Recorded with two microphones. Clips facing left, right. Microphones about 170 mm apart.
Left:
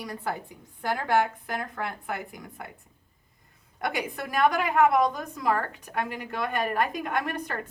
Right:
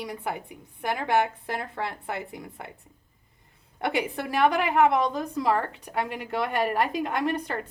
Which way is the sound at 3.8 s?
30° right (ahead or behind).